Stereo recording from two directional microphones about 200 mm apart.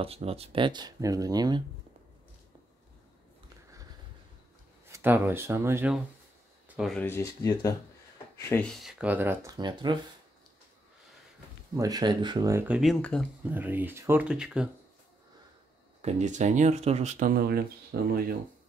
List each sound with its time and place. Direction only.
0.0 s speech: 30° right (ahead or behind)
4.8 s speech: 10° right (ahead or behind)
6.8 s speech: 5° left (ahead or behind); by 9.9 s 20° right (ahead or behind)
11.7 s speech: 20° right (ahead or behind)
13.0 s speech: 5° left (ahead or behind)
13.4 s speech: 10° right (ahead or behind)
16.0 s speech: 35° right (ahead or behind)